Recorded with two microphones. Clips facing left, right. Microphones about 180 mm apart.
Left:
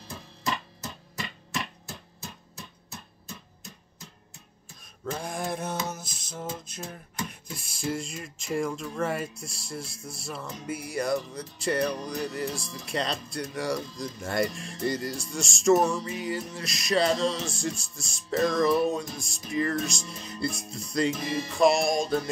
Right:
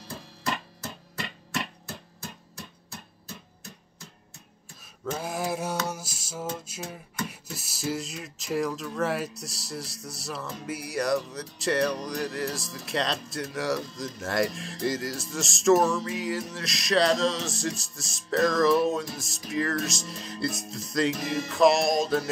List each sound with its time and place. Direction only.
5.1 s music: 5° right (ahead or behind)
7.2 s a sound: 5° right (ahead or behind)
9.0 s music: centre (ahead or behind)